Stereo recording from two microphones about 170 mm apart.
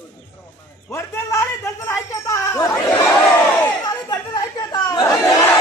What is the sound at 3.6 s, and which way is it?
Chatter, 20° left (ahead or behind).